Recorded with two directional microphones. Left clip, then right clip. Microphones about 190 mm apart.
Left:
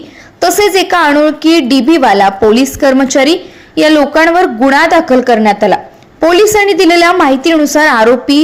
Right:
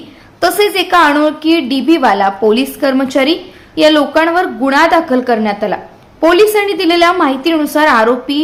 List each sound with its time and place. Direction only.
0.3 s a woman's voice: 25° left (ahead or behind)